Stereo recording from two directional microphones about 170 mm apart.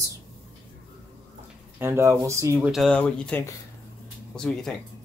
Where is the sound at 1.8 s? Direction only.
15° right (ahead or behind).